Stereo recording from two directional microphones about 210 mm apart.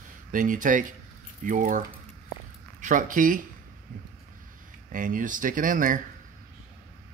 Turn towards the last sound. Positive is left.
turn(degrees=-40)  # may be behind; listen again after turning